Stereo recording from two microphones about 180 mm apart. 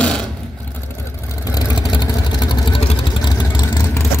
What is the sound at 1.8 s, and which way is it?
Vehicle, 25° left (ahead or behind).